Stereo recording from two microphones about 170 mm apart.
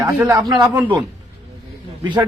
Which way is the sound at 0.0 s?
20° right (ahead or behind).